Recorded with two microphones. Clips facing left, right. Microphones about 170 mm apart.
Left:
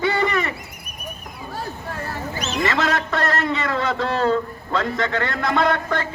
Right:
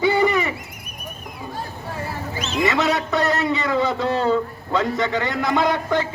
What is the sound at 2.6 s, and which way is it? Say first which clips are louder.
A man's voice: right 2 dB; 15° right (ahead or behind).